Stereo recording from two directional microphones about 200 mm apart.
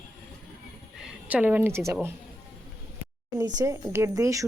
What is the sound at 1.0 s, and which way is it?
A woman's voice, 5° right (ahead or behind).